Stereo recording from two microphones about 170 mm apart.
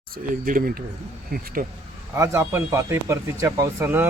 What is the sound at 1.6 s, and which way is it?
Speech, 65° right (ahead or behind).